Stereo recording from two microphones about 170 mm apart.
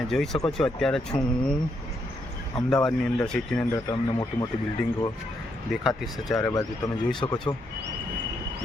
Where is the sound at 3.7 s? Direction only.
20° left (ahead or behind).